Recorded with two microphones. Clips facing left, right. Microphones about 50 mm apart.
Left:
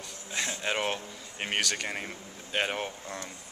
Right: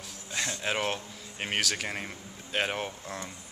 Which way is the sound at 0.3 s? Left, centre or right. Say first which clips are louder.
Even; centre.